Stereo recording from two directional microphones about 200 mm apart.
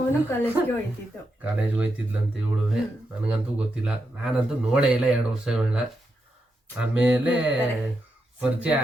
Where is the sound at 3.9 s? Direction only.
5° right (ahead or behind).